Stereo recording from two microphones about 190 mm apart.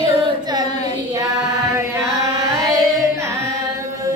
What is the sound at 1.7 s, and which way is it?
Carnatic music, 15° right (ahead or behind).